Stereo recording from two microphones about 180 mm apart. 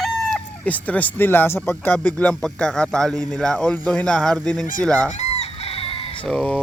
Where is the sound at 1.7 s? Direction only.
10° left (ahead or behind).